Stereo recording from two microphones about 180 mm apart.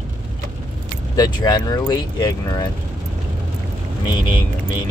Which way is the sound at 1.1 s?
20° left (ahead or behind).